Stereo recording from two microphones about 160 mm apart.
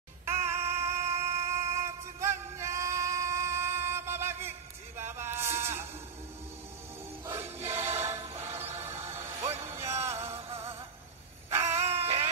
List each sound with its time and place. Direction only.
0.3 s synthetic singing: 15° right (ahead or behind)
1.3 s music: 15° right (ahead or behind)
7.3 s music: 15° right (ahead or behind)
11.8 s dog: 40° right (ahead or behind)